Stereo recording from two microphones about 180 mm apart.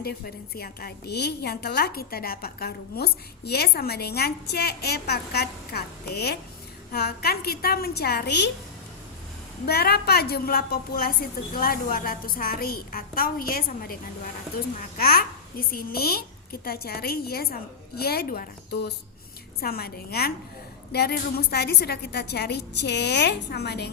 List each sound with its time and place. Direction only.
0.0 s a woman's voice: 60° left (ahead or behind)
9.6 s a woman's voice: 60° left (ahead or behind)
19.6 s a woman's voice: 60° left (ahead or behind)